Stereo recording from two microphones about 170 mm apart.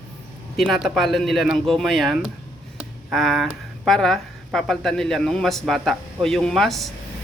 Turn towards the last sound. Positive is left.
turn(degrees=0)  # may be behind; listen again after turning